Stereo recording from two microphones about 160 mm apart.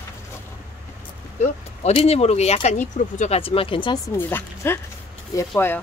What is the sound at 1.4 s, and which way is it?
Speech, 45° left (ahead or behind).